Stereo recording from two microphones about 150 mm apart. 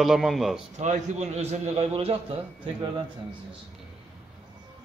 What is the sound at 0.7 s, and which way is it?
A man's voice, 50° right (ahead or behind).